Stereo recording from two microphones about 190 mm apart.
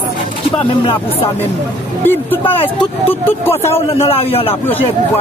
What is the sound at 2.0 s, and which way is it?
Speech, 10° left (ahead or behind).